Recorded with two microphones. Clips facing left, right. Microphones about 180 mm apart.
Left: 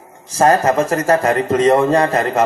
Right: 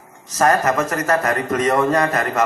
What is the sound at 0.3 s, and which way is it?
A man's voice, 30° left (ahead or behind).